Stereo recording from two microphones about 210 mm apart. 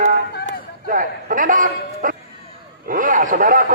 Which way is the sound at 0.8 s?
40° right (ahead or behind).